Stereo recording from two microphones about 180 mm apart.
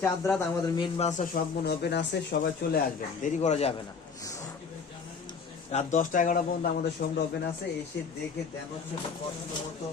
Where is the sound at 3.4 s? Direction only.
35° left (ahead or behind).